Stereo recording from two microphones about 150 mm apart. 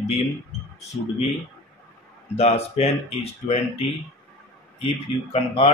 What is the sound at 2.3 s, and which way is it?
Speech, 45° left (ahead or behind).